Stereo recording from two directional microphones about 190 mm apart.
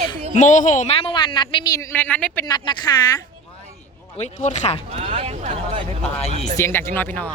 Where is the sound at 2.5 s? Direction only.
20° left (ahead or behind).